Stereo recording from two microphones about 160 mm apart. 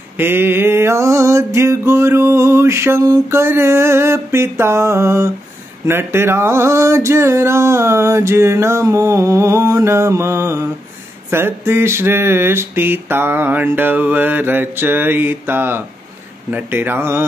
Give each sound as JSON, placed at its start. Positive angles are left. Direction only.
{"t": 0.2, "sound": "mantra", "side_deg": -15}